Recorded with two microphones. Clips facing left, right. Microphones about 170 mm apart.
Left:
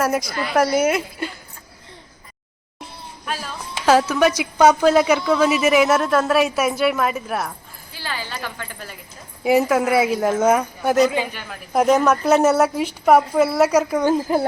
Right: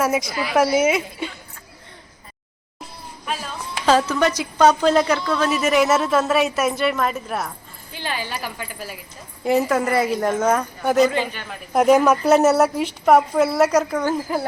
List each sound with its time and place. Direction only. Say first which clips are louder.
0.0 s a woman's voice: even; centre (ahead or behind)
3.2 s music: right 1 dB; centre (ahead or behind)
4.1 s a woman's voice: left 2 dB; 10° left (ahead or behind)
7.9 s speech: right 2 dB; 20° right (ahead or behind)
9.4 s a woman's voice: left 2 dB; 5° left (ahead or behind)
14.0 s speech: left 4 dB; 20° left (ahead or behind)